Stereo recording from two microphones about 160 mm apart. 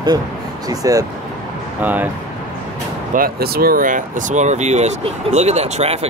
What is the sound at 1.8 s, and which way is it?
Speech, 10° right (ahead or behind).